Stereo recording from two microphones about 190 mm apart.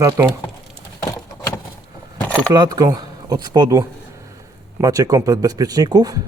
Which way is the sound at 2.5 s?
20° right (ahead or behind).